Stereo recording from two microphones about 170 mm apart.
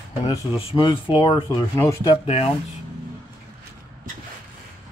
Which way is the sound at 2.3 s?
35° left (ahead or behind).